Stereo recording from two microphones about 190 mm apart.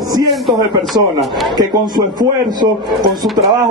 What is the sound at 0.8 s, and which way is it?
Speech, centre (ahead or behind).